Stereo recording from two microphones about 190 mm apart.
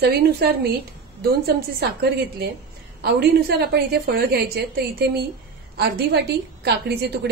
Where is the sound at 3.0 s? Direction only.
60° right (ahead or behind).